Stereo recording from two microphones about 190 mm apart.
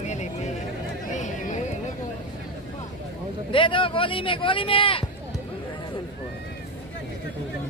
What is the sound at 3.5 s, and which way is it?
Speech, 25° left (ahead or behind).